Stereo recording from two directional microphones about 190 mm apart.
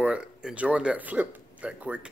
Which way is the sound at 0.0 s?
5° right (ahead or behind).